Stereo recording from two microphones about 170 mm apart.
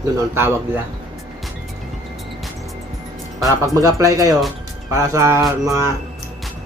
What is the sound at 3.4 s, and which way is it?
Speech, 20° right (ahead or behind).